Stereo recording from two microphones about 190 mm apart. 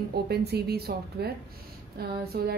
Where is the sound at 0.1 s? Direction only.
60° right (ahead or behind).